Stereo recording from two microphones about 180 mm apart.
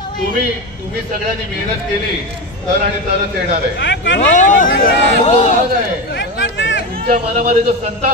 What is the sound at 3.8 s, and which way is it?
Speech, 80° left.